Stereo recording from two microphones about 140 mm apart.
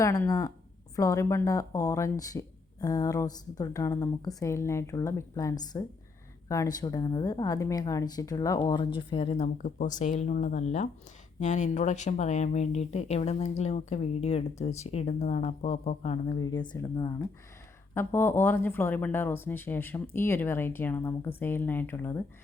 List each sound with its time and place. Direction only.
0.0 s a woman's voice: 25° left (ahead or behind)
9.0 s speech: 40° left (ahead or behind)
9.6 s speech: 70° left (ahead or behind); by 16.4 s 45° left (ahead or behind)
16.4 s a woman's voice: 25° left (ahead or behind)
17.9 s speech: 15° left (ahead or behind)